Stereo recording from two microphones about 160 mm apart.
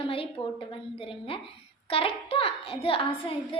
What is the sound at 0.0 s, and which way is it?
A child's voice, 35° left (ahead or behind).